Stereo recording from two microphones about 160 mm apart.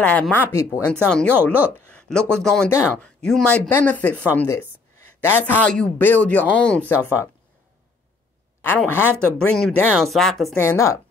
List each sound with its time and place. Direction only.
0.0 s speech: 10° left (ahead or behind)
2.7 s speech: 15° left (ahead or behind)
3.2 s speech: 5° left (ahead or behind)
8.6 s speech: 15° left (ahead or behind)
10.6 s speech: 15° left (ahead or behind)